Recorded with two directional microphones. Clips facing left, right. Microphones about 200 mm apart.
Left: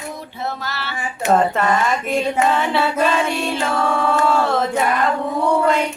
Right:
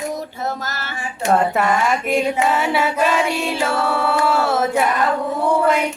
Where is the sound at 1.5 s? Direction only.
10° right (ahead or behind).